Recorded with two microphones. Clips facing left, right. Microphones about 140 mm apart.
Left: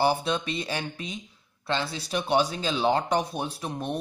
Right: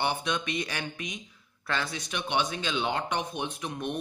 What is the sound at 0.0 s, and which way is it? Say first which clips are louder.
A man's voice: left 5 dB; 35° left (ahead or behind).